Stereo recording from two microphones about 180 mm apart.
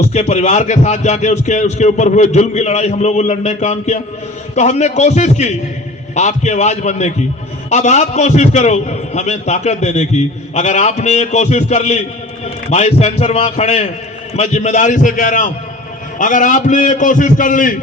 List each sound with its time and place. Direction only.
0.1 s a man's voice: 35° left (ahead or behind)